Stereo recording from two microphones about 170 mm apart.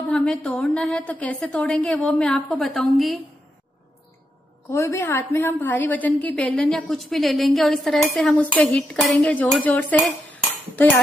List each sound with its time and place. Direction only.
0.1 s a woman's voice: 5° left (ahead or behind)
4.6 s a woman's voice: 15° left (ahead or behind)
9.9 s cutlery: centre (ahead or behind)